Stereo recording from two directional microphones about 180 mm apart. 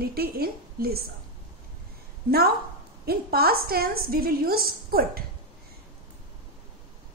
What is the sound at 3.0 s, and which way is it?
A woman's voice, 60° right (ahead or behind).